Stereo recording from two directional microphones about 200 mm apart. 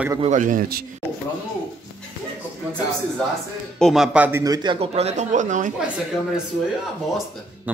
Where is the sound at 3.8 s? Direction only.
Centre (ahead or behind); by 5.7 s 40° right (ahead or behind).